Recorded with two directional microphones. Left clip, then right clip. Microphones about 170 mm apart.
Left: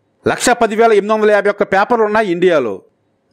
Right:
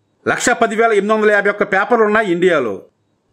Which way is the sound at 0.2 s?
30° left (ahead or behind).